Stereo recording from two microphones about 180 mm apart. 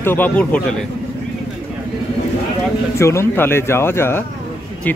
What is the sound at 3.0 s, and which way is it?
Speech, 15° left (ahead or behind).